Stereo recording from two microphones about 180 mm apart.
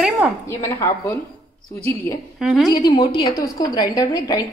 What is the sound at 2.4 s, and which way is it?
Speech, 5° right (ahead or behind).